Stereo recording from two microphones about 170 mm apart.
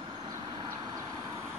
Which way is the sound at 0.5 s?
25° right (ahead or behind).